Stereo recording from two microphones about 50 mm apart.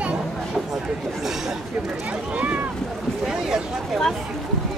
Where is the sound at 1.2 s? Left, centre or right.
Centre.